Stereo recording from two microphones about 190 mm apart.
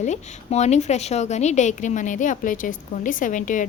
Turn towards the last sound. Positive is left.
turn(degrees=40)  # may be behind; listen again after turning